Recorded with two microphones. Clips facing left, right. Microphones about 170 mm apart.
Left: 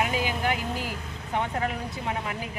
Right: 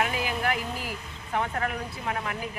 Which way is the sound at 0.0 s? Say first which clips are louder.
Left 1 dB; 25° left (ahead or behind).